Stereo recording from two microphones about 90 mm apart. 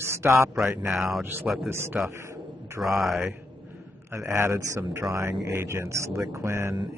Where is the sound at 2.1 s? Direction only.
30° right (ahead or behind).